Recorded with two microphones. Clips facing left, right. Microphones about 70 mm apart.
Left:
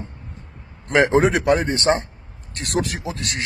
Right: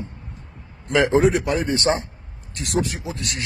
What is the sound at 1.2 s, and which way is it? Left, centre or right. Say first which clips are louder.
Speech: left 2 dB; left.